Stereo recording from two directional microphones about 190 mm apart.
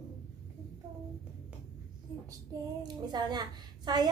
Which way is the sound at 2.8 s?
20° right (ahead or behind).